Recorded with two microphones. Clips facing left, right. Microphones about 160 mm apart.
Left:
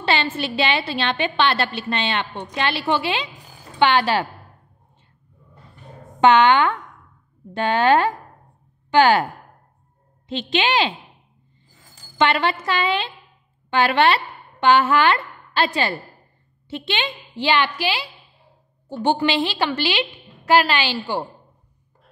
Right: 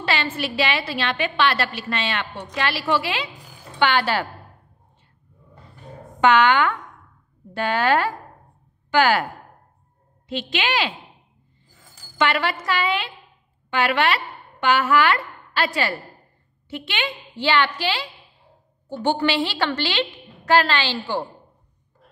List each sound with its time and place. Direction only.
0.0 s a woman's voice: 25° left (ahead or behind)
6.2 s a woman's voice: 25° left (ahead or behind)
10.2 s a woman's voice: 25° left (ahead or behind)
12.2 s a woman's voice: 25° left (ahead or behind)